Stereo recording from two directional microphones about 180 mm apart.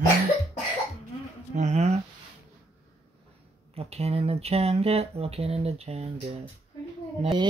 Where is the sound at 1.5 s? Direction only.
40° right (ahead or behind).